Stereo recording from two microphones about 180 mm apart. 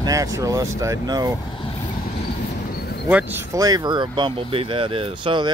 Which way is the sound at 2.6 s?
60° left (ahead or behind).